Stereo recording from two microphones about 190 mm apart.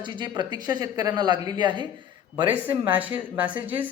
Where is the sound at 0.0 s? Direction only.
25° right (ahead or behind).